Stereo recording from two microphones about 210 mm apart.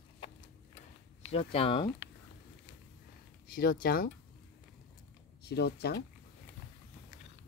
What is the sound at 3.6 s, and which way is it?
Speech, 45° left (ahead or behind).